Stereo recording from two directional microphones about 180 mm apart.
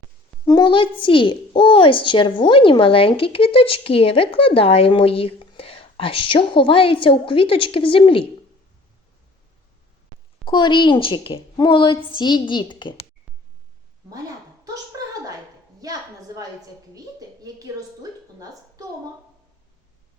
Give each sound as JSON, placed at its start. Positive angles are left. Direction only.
{"t": 0.4, "sound": "speech", "side_deg": 25}
{"t": 10.4, "sound": "speech", "side_deg": 25}
{"t": 15.8, "sound": "a sound", "side_deg": -20}